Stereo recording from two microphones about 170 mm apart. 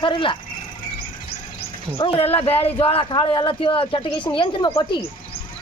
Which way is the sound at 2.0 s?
35° left (ahead or behind).